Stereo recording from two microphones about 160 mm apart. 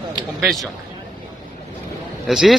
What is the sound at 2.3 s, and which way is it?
Speech, centre (ahead or behind).